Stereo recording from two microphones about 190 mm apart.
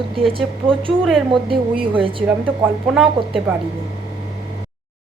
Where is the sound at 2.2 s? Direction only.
5° right (ahead or behind).